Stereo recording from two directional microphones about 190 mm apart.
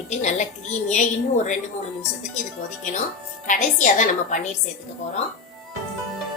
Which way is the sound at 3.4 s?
40° left (ahead or behind).